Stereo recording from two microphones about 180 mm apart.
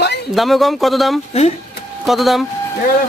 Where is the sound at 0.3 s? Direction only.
Centre (ahead or behind).